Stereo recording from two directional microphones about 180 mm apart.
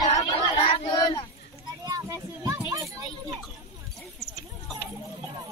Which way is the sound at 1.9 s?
20° right (ahead or behind).